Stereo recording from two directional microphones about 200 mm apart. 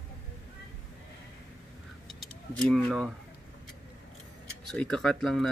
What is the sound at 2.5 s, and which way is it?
Speech, 5° left (ahead or behind).